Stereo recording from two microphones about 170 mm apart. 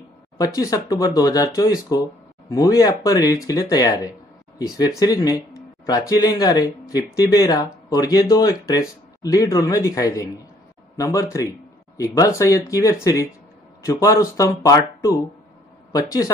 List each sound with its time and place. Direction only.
0.4 s speech: 20° left (ahead or behind)